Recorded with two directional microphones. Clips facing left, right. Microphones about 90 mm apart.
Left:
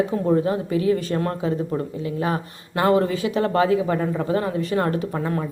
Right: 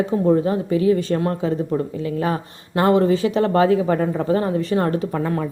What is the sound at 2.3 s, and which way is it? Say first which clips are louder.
Speech: right 3 dB; 30° right (ahead or behind).